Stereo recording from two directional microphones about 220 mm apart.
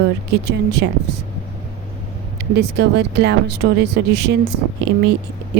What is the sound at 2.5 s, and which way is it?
Speech, 50° right (ahead or behind).